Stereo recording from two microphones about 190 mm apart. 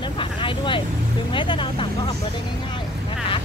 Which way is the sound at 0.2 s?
25° left (ahead or behind).